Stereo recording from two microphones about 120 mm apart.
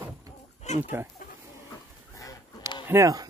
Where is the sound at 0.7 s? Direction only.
75° left (ahead or behind).